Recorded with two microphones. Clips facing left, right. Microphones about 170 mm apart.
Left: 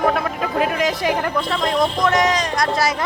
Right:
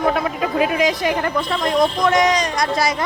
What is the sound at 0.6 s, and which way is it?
Speech, centre (ahead or behind).